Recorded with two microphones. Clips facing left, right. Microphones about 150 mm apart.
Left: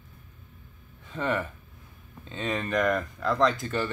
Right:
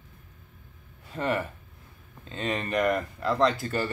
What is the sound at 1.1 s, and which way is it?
Speech, 5° right (ahead or behind).